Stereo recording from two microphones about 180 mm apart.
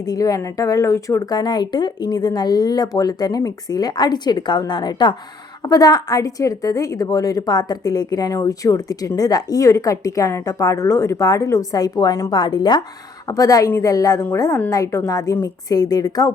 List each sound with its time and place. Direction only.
0.0 s a woman's voice: 20° left (ahead or behind)